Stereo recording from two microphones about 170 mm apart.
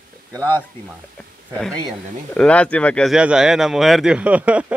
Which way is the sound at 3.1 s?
5° right (ahead or behind).